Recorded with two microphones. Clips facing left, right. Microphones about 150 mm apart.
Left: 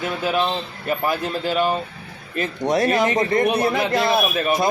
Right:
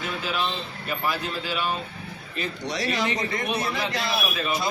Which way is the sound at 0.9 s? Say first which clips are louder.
Left 6 dB; 50° left (ahead or behind).